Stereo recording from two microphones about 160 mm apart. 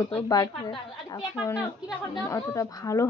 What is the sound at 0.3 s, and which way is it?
Speech, 25° left (ahead or behind).